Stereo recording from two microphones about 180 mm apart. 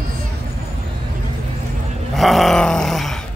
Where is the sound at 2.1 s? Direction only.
Centre (ahead or behind).